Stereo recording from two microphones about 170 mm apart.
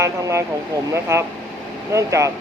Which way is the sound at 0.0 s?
15° right (ahead or behind).